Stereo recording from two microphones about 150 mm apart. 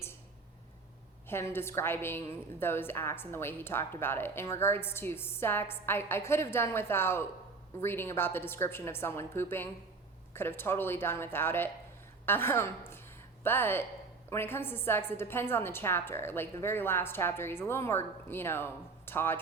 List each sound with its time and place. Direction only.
1.3 s a woman's voice: 15° left (ahead or behind)